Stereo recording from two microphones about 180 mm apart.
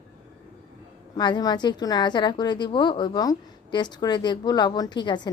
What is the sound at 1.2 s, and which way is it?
A woman's voice, 25° left (ahead or behind).